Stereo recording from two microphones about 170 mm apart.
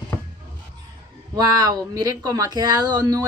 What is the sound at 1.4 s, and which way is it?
Speech, 20° right (ahead or behind).